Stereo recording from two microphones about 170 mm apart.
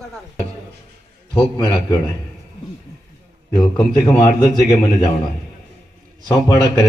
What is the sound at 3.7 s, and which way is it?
Speech, 25° left (ahead or behind).